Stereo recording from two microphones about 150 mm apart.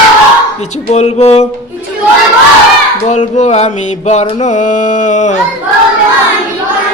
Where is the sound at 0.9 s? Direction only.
45° left (ahead or behind).